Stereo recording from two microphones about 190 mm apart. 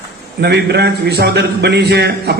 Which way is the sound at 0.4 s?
60° right (ahead or behind).